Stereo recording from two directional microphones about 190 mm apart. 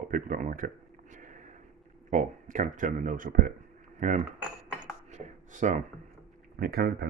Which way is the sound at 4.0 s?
40° right (ahead or behind).